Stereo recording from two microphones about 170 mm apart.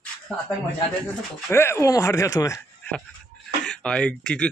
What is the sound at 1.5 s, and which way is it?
Speech, 15° left (ahead or behind).